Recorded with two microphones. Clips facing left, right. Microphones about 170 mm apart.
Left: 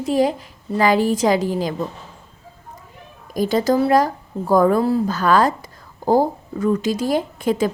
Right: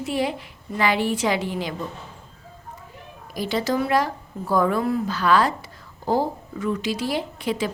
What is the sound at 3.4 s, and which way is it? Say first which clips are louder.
A woman's voice: left 6 dB; 45° left (ahead or behind).